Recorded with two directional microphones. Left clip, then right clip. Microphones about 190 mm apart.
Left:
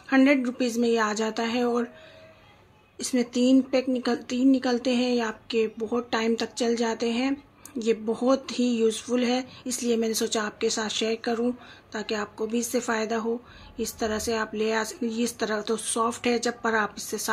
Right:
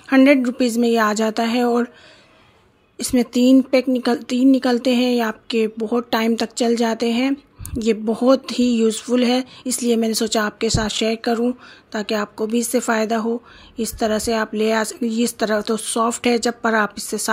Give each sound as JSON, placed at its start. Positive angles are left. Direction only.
{"t": 0.1, "sound": "speech", "side_deg": -40}
{"t": 3.0, "sound": "speech", "side_deg": -45}